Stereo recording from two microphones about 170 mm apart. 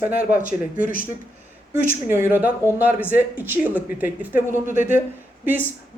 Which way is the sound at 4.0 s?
10° right (ahead or behind).